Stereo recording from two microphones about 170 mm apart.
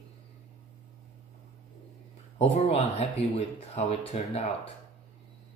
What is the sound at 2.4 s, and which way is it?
Speech, 40° left (ahead or behind).